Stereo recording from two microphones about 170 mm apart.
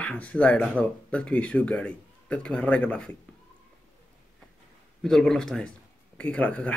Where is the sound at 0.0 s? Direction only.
10° left (ahead or behind).